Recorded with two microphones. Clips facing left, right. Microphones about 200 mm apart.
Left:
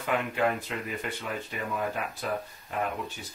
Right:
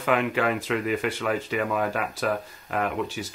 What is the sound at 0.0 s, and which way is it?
Speech, 90° right.